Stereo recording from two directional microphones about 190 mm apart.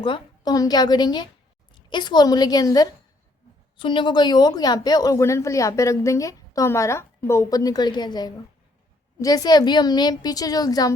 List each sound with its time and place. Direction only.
0.0 s a woman's voice: 25° left (ahead or behind)